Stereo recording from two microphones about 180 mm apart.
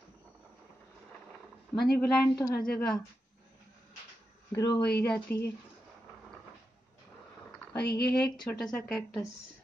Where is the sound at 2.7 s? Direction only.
5° left (ahead or behind).